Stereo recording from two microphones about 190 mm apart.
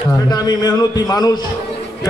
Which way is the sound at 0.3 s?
20° left (ahead or behind).